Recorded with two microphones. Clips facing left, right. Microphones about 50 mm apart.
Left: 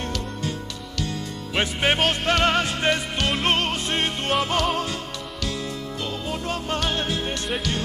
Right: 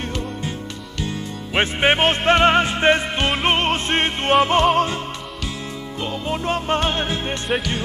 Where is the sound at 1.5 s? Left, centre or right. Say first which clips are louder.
Right 5 dB; right.